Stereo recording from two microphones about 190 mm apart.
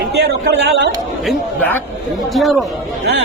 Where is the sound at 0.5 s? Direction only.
65° right (ahead or behind).